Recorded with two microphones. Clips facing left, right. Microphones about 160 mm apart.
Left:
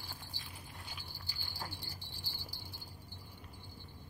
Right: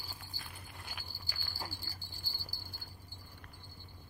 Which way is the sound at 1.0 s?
65° left (ahead or behind).